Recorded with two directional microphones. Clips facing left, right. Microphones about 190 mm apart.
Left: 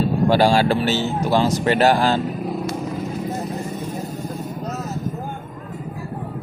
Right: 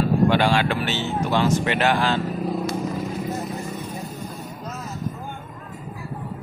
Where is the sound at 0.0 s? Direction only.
35° left (ahead or behind).